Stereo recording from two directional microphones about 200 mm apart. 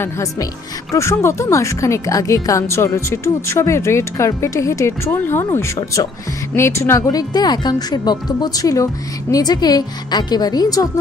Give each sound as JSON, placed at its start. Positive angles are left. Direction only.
{"t": 0.0, "sound": "speech", "side_deg": 15}